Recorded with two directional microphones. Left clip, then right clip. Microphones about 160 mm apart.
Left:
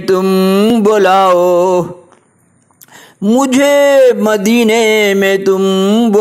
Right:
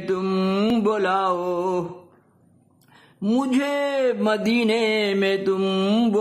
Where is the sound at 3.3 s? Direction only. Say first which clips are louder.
Left 14 dB; 40° left (ahead or behind).